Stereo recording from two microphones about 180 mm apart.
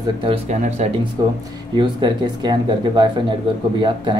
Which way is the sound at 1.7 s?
25° right (ahead or behind).